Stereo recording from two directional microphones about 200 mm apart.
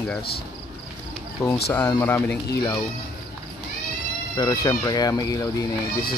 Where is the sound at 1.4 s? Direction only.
15° left (ahead or behind).